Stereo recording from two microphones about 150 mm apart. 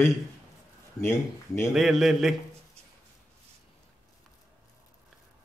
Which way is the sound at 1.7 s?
Centre (ahead or behind).